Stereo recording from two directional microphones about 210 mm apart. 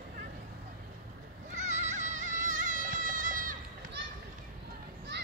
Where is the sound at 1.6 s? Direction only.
35° right (ahead or behind).